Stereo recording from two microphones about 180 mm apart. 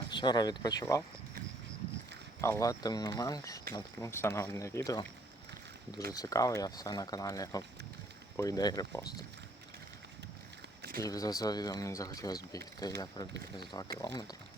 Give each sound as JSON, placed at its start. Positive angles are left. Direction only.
{"t": 0.1, "sound": "speech", "side_deg": 25}
{"t": 2.4, "sound": "speech", "side_deg": 15}
{"t": 6.1, "sound": "speech", "side_deg": 20}
{"t": 11.0, "sound": "speech", "side_deg": 20}